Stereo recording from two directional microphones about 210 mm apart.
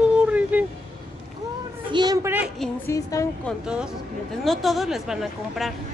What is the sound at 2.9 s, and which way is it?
Speech, 15° left (ahead or behind).